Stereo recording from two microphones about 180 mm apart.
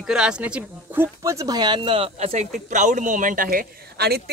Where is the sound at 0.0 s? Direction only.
5° right (ahead or behind).